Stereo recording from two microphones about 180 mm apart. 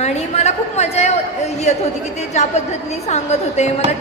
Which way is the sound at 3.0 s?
35° left (ahead or behind).